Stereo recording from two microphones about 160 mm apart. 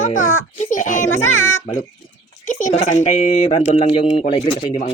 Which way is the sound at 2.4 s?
50° left (ahead or behind).